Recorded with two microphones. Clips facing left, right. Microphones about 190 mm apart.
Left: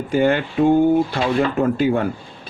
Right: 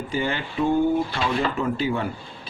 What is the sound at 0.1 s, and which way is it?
A man's voice, 55° left (ahead or behind).